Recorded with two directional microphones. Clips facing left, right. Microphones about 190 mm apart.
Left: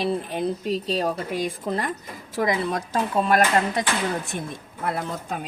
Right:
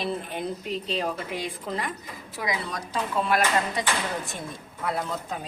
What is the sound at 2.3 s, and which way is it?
Speech, 50° left (ahead or behind).